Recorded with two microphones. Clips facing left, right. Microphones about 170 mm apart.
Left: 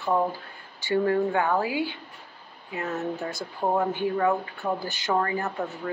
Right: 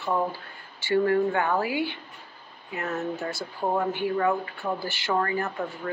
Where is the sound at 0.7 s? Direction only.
15° left (ahead or behind).